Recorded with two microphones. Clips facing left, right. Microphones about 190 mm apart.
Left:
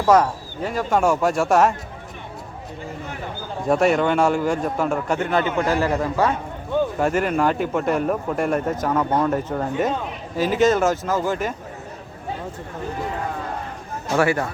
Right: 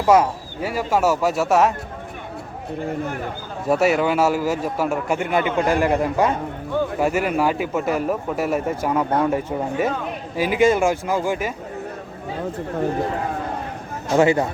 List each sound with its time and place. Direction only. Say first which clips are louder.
0.0 s speech: right 1 dB; 10° right (ahead or behind)
3.7 s speech: even; 5° right (ahead or behind)
14.2 s speech: right 4 dB; 20° right (ahead or behind)